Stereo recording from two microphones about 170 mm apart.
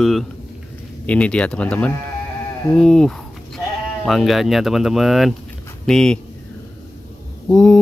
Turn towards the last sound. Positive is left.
turn(degrees=5)  # may be behind; listen again after turning